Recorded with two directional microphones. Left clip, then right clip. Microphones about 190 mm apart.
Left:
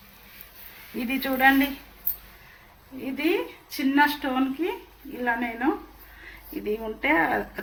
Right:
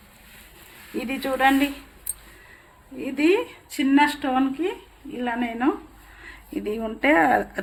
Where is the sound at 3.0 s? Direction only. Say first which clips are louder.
Right 5 dB; 55° right (ahead or behind).